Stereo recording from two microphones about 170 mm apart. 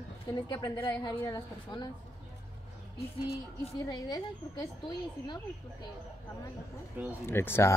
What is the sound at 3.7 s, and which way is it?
A woman's voice, 20° left (ahead or behind).